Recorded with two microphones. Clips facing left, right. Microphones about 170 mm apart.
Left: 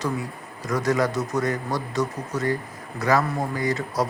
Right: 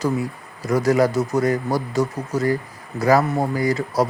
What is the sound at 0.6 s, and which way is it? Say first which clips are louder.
Speech: right 5 dB; 30° right (ahead or behind).